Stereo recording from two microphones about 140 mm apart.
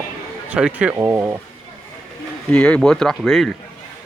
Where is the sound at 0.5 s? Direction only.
10° right (ahead or behind).